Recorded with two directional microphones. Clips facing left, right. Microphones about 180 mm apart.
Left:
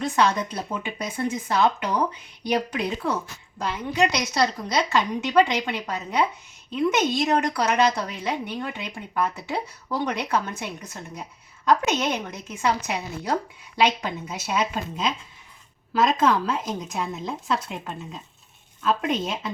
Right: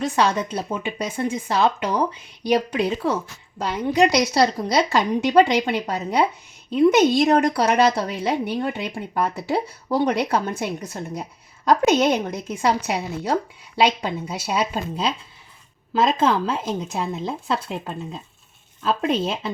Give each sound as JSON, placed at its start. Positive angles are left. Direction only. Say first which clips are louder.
{"t": 0.0, "sound": "a woman's voice", "louder": "right 2 dB", "side_deg": -35}